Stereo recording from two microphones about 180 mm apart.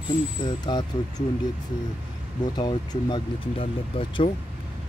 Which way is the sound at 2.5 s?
25° left (ahead or behind).